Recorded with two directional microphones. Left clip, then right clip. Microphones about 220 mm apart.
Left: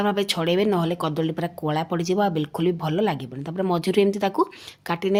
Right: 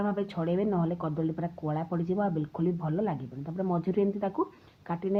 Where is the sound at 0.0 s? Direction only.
30° left (ahead or behind).